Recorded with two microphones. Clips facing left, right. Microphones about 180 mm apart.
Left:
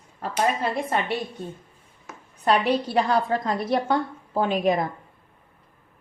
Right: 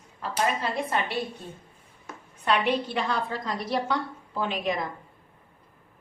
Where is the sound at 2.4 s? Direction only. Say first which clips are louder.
Left 4 dB; 40° left (ahead or behind).